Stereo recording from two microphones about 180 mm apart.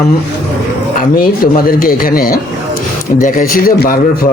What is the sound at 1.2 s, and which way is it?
Speech, 50° left (ahead or behind).